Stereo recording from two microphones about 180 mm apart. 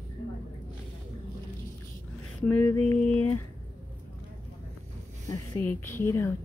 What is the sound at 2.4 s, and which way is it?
Speech, 10° left (ahead or behind).